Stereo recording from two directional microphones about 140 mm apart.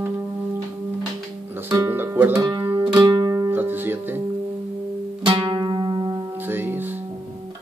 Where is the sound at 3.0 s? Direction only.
25° right (ahead or behind).